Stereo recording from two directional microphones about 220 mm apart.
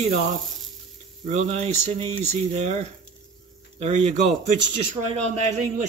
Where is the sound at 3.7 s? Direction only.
30° right (ahead or behind).